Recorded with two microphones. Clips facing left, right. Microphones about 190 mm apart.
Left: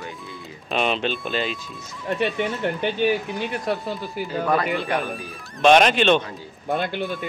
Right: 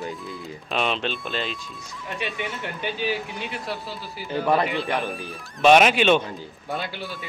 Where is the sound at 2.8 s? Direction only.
55° left (ahead or behind).